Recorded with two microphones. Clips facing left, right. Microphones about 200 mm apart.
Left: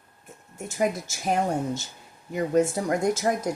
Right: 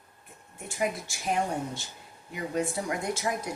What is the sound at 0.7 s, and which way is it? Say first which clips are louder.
Speech: left 5 dB; 40° left (ahead or behind).